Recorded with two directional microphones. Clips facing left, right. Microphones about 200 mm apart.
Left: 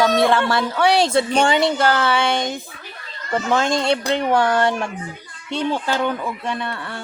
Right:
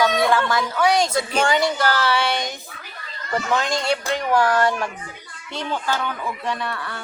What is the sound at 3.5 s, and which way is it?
Speech, 25° left (ahead or behind).